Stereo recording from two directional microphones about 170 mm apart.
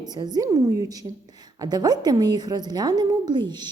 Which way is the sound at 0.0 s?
25° right (ahead or behind).